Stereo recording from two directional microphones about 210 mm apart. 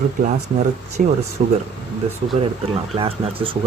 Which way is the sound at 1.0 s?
40° right (ahead or behind).